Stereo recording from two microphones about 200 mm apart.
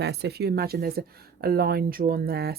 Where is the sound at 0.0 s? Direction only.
55° right (ahead or behind).